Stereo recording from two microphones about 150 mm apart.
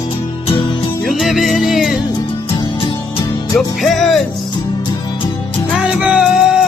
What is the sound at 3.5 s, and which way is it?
Music, centre (ahead or behind).